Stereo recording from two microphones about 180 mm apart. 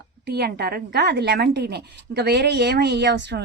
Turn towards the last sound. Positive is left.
turn(degrees=-75)  # may be behind; listen again after turning